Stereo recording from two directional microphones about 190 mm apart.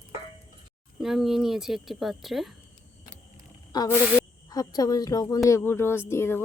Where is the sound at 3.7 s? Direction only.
20° left (ahead or behind).